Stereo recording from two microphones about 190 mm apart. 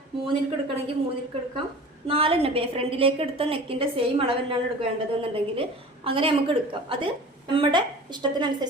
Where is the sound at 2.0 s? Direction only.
30° right (ahead or behind).